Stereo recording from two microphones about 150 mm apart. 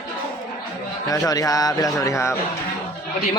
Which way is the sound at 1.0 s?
25° left (ahead or behind).